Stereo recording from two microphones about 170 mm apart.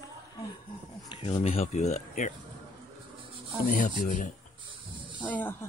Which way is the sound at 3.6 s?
50° left (ahead or behind).